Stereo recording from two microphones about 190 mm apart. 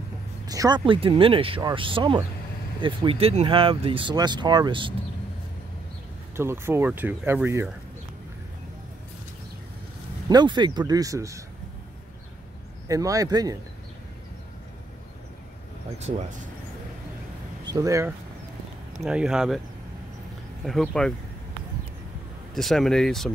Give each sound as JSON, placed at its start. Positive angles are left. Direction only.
{"t": 0.5, "sound": "speech", "side_deg": -20}
{"t": 6.3, "sound": "speech", "side_deg": -15}
{"t": 10.3, "sound": "speech", "side_deg": -25}
{"t": 12.8, "sound": "speech", "side_deg": -20}
{"t": 17.6, "sound": "speech", "side_deg": -20}
{"t": 18.9, "sound": "speech", "side_deg": -5}
{"t": 20.6, "sound": "speech", "side_deg": 0}
{"t": 22.5, "sound": "speech", "side_deg": 0}